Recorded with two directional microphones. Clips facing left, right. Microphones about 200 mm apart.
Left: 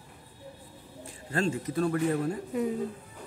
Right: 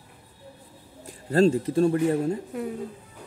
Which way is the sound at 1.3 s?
35° right (ahead or behind).